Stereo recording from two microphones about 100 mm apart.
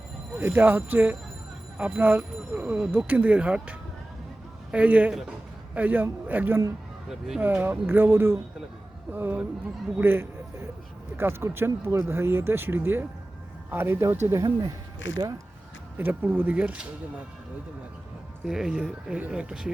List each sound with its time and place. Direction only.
0.3 s speech: 20° right (ahead or behind)
7.1 s speech: 5° right (ahead or behind)
7.4 s speech: 20° right (ahead or behind)
16.0 s speech: 20° right (ahead or behind)
18.4 s speech: 5° right (ahead or behind)